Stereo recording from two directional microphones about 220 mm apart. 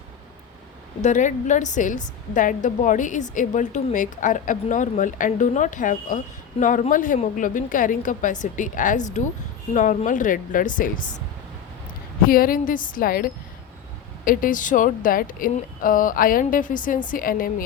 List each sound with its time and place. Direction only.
1.0 s speech: 35° left (ahead or behind)
12.2 s speech: 40° left (ahead or behind)